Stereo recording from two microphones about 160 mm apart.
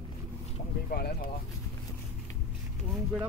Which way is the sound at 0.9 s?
70° left (ahead or behind).